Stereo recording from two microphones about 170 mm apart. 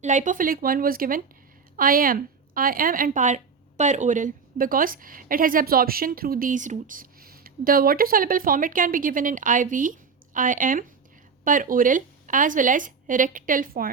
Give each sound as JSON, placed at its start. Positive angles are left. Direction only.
{"t": 0.0, "sound": "a woman's voice", "side_deg": -45}